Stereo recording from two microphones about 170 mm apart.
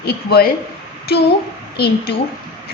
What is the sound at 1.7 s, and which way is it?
Speech, 70° left (ahead or behind).